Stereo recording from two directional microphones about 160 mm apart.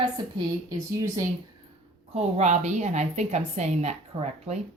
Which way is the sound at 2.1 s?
45° right (ahead or behind).